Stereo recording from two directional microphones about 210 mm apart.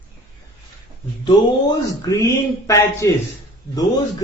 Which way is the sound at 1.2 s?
15° left (ahead or behind).